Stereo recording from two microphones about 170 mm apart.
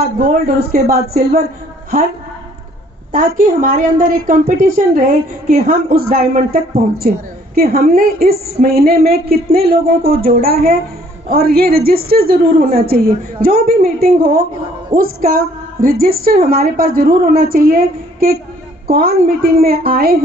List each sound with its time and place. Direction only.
0.0 s speech: 55° right (ahead or behind)
3.1 s speech: 55° right (ahead or behind)